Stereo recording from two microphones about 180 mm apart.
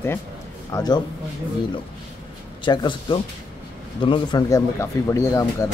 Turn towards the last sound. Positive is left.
turn(degrees=15)  # may be behind; listen again after turning